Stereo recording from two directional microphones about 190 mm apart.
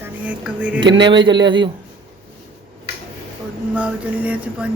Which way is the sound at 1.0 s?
25° right (ahead or behind).